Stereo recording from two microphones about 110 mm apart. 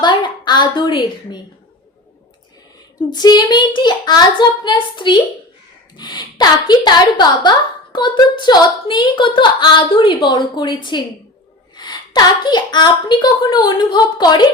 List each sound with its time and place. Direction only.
0.0 s a woman's voice: 40° left (ahead or behind)
3.1 s a woman's voice: 40° left (ahead or behind)